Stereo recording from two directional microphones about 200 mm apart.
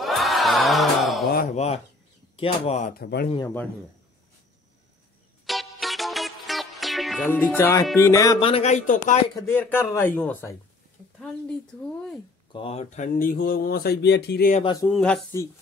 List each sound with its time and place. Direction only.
0.0 s crowd: centre (ahead or behind)
1.3 s a sound: 40° left (ahead or behind)
2.3 s speech: 30° left (ahead or behind)
2.9 s speech: 50° left (ahead or behind)
5.5 s music: centre (ahead or behind)
7.2 s speech: 10° left (ahead or behind); by 9.2 s 40° left (ahead or behind)
9.3 s speech: 10° left (ahead or behind)
12.5 s speech: 30° left (ahead or behind); by 14.5 s 55° left (ahead or behind)
14.6 s speech: 25° left (ahead or behind)
14.9 s speech: 5° left (ahead or behind)